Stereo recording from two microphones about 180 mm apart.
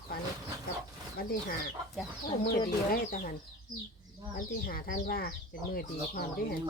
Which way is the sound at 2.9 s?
50° left (ahead or behind).